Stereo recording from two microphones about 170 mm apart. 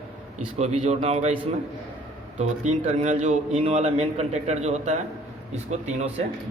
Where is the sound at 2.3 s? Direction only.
45° right (ahead or behind).